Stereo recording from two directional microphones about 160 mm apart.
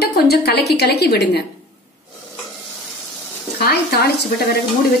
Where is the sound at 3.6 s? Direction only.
80° left.